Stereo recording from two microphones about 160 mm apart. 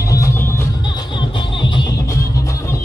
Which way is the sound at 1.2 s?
30° left (ahead or behind).